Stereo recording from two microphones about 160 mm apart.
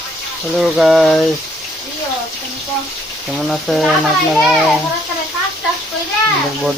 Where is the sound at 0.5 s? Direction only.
Centre (ahead or behind).